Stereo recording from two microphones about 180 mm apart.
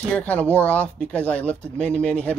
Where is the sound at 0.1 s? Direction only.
10° left (ahead or behind).